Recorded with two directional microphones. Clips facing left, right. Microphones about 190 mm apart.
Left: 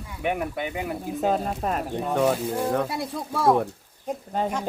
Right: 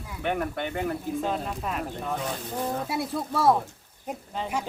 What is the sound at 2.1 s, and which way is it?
Speech, 70° left (ahead or behind).